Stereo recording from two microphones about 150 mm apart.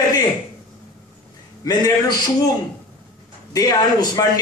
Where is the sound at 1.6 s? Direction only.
25° left (ahead or behind).